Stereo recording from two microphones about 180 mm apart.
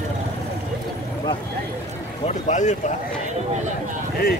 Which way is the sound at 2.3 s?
40° left (ahead or behind).